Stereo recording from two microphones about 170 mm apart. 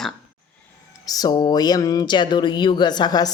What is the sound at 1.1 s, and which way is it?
Speech, 25° left (ahead or behind).